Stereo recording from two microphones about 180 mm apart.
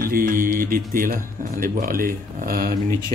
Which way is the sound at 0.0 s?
50° right (ahead or behind).